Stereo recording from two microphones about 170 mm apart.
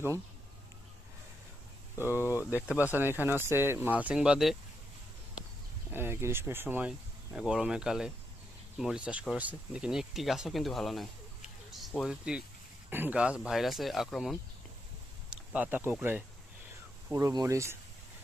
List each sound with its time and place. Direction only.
2.0 s speech: 15° left (ahead or behind)
2.5 s speech: 10° right (ahead or behind)
5.9 s speech: 15° right (ahead or behind)